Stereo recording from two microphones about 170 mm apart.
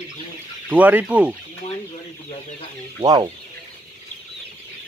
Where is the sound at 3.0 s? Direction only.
25° right (ahead or behind).